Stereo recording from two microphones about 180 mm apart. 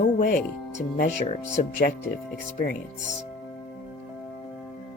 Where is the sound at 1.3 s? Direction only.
40° left (ahead or behind).